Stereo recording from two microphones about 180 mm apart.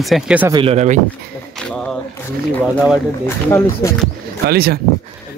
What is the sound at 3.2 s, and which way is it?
Speech, 15° left (ahead or behind).